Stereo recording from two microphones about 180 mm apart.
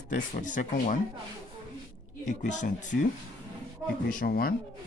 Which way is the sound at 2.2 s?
45° left (ahead or behind).